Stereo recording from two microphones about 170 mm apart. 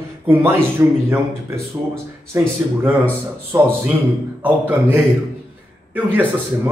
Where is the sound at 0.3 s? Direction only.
15° right (ahead or behind).